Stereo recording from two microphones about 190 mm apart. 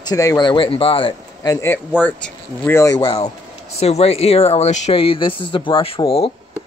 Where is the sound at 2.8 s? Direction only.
20° left (ahead or behind).